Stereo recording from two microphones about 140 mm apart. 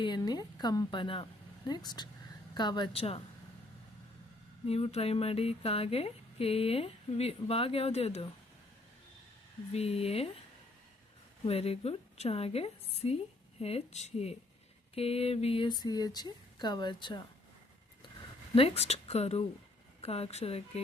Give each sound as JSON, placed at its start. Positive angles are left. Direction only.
{"t": 0.2, "sound": "a woman's voice", "side_deg": 30}
{"t": 4.6, "sound": "speech", "side_deg": 45}
{"t": 9.7, "sound": "speech", "side_deg": 45}
{"t": 11.4, "sound": "speech", "side_deg": 45}
{"t": 18.5, "sound": "speech", "side_deg": 45}